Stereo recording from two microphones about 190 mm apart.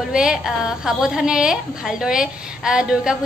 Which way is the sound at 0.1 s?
5° right (ahead or behind).